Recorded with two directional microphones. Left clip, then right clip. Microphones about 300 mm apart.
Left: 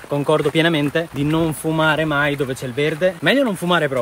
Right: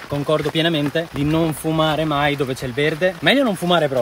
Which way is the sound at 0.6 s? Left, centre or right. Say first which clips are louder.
Left 2 dB; centre.